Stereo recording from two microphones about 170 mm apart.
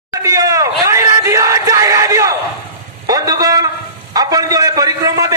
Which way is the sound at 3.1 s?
20° right (ahead or behind).